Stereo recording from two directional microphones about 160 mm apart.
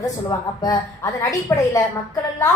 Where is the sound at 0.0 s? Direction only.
20° left (ahead or behind).